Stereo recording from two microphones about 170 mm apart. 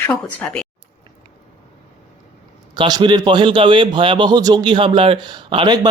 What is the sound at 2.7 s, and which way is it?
A man's voice, 25° right (ahead or behind).